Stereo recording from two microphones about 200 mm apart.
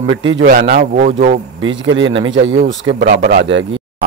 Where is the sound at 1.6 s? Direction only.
70° right (ahead or behind).